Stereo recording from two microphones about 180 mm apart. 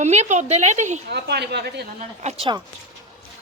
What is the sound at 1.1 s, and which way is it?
Speech, 65° right (ahead or behind).